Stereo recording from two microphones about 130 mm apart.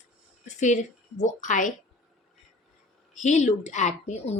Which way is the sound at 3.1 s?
65° left (ahead or behind).